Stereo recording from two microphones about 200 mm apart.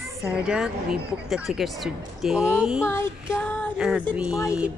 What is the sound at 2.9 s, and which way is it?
Speech, 15° left (ahead or behind).